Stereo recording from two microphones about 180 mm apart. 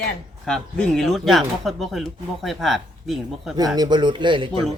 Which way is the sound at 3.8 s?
25° right (ahead or behind).